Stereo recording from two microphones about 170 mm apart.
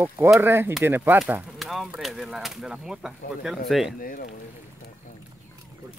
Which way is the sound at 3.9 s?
55° left (ahead or behind).